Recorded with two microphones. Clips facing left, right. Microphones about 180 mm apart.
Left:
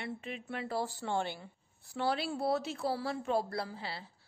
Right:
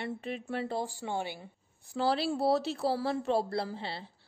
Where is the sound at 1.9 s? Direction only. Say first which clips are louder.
Right 4 dB; 30° right (ahead or behind).